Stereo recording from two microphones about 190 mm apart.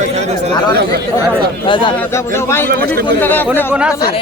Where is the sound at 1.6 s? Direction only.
25° left (ahead or behind).